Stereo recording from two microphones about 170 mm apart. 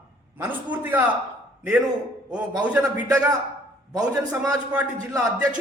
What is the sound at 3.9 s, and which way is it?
A man's voice, 20° right (ahead or behind).